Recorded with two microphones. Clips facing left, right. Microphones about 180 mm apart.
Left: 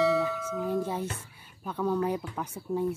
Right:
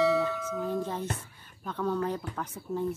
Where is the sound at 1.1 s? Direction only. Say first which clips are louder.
Right 3 dB; 10° left (ahead or behind).